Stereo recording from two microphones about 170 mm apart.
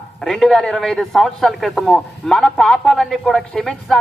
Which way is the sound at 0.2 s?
Centre (ahead or behind).